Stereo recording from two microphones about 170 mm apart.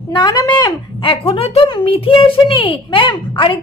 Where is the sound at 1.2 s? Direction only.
35° left (ahead or behind).